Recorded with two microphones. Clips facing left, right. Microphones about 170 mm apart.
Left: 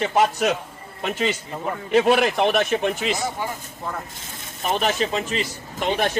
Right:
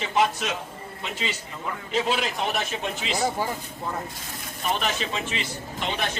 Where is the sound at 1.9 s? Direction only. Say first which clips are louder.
Left 9 dB; 65° left (ahead or behind).